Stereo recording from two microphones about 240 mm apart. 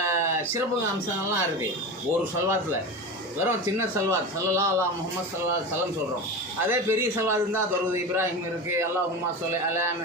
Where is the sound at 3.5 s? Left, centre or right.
Centre.